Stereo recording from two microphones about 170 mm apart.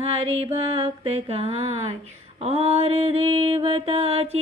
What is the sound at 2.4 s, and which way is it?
A woman's voice, 35° right (ahead or behind).